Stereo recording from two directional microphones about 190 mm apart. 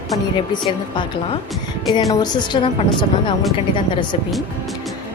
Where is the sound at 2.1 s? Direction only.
20° left (ahead or behind).